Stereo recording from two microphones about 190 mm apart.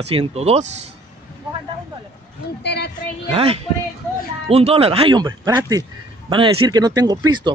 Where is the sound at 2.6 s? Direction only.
60° left (ahead or behind).